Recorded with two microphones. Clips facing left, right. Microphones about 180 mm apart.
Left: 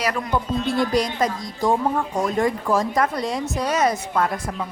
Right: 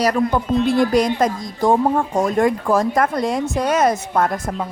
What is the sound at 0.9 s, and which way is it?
A woman's voice, 50° right (ahead or behind).